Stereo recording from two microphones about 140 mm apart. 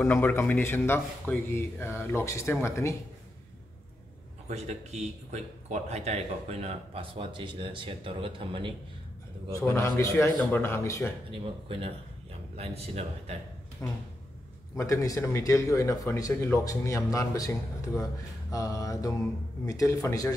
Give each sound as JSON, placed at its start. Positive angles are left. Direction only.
{"t": 0.0, "sound": "speech", "side_deg": 15}
{"t": 4.5, "sound": "speech", "side_deg": -55}
{"t": 9.6, "sound": "speech", "side_deg": 20}
{"t": 11.7, "sound": "speech", "side_deg": -45}
{"t": 13.8, "sound": "speech", "side_deg": 10}
{"t": 14.8, "sound": "speech", "side_deg": 25}